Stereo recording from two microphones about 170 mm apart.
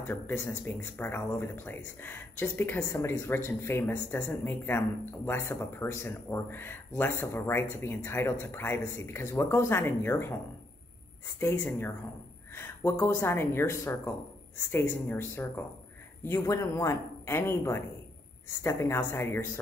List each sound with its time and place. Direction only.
0.0 s speech: 10° left (ahead or behind)